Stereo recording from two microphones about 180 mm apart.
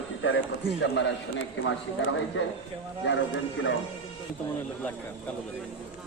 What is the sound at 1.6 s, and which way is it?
Speech, 90° left.